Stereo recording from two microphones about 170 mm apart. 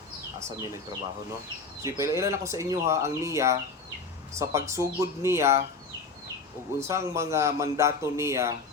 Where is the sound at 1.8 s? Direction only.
15° right (ahead or behind).